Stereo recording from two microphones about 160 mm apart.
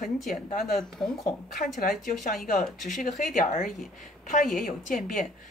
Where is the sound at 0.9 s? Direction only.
5° left (ahead or behind).